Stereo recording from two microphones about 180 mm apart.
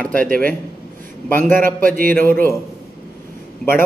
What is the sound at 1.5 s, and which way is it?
Speech, 50° right (ahead or behind).